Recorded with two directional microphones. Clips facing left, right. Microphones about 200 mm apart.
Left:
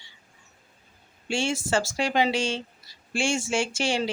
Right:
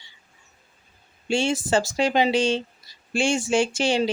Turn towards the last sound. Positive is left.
turn(degrees=-20)  # may be behind; listen again after turning